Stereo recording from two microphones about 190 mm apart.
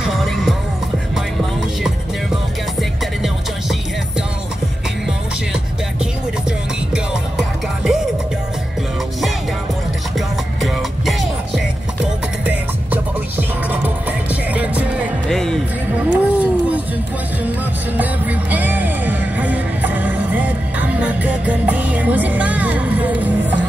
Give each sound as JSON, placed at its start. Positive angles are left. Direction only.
{"t": 0.0, "sound": "music", "side_deg": 0}
{"t": 2.8, "sound": "music", "side_deg": 0}
{"t": 6.9, "sound": "music", "side_deg": 0}
{"t": 10.1, "sound": "music", "side_deg": 0}
{"t": 15.9, "sound": "a sound", "side_deg": -5}
{"t": 17.9, "sound": "music", "side_deg": -10}